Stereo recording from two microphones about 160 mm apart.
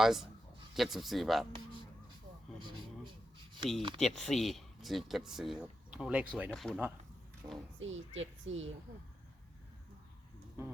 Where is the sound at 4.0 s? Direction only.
Centre (ahead or behind).